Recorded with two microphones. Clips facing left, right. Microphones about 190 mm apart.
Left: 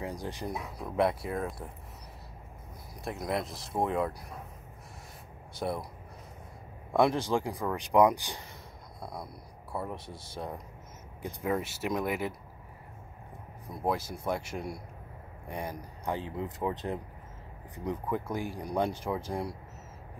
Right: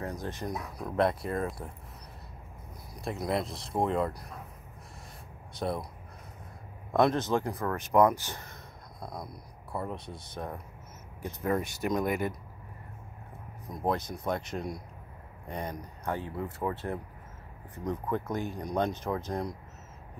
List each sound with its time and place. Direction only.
0.0 s speech: 15° left (ahead or behind)
3.0 s speech: centre (ahead or behind)
5.6 s speech: 5° left (ahead or behind)
6.9 s speech: 10° left (ahead or behind)
9.9 s speech: 25° left (ahead or behind)
10.3 s speech: 15° left (ahead or behind)
13.8 s speech: 5° left (ahead or behind)